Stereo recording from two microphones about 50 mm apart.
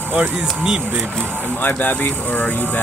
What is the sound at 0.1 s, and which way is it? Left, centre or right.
Speech, right.